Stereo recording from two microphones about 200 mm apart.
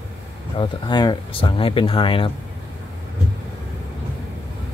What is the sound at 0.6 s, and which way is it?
Speech, 20° left (ahead or behind).